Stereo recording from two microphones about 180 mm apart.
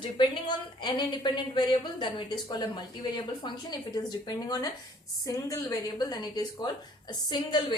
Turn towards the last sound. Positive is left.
turn(degrees=25)  # may be behind; listen again after turning